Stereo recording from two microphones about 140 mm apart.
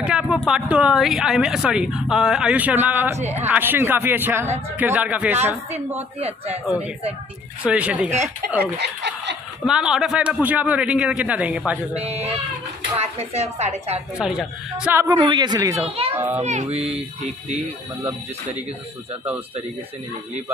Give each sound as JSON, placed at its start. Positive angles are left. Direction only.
{"t": 0.0, "sound": "a sound", "side_deg": -5}
{"t": 0.5, "sound": "a woman's voice", "side_deg": -5}
{"t": 6.2, "sound": "speech", "side_deg": -50}
{"t": 7.6, "sound": "a man's voice", "side_deg": -10}
{"t": 9.7, "sound": "a man's voice", "side_deg": -5}
{"t": 12.0, "sound": "speech", "side_deg": -50}
{"t": 14.1, "sound": "a man's voice", "side_deg": -5}
{"t": 15.1, "sound": "a man's voice", "side_deg": -35}
{"t": 15.8, "sound": "speech", "side_deg": -40}
{"t": 16.3, "sound": "speech", "side_deg": -55}